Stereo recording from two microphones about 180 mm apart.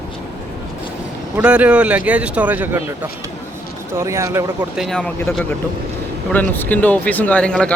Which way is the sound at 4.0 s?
15° right (ahead or behind).